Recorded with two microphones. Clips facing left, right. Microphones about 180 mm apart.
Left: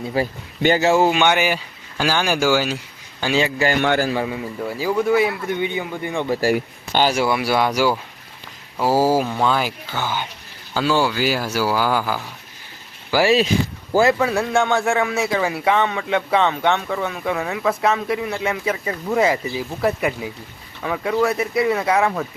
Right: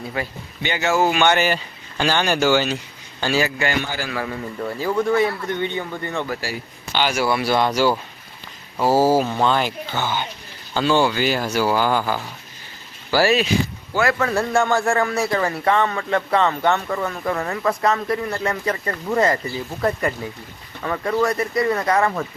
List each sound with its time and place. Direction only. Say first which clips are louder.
0.2 s speech: left 9 dB; 35° left (ahead or behind)
1.2 s a man's voice: even; 10° left (ahead or behind)
6.4 s speech: left 11 dB; 45° left (ahead or behind)
7.3 s a man's voice: even; 10° left (ahead or behind)
13.9 s a man's voice: left 5 dB; 25° left (ahead or behind)
14.2 s a man's voice: left 1 dB; 5° left (ahead or behind)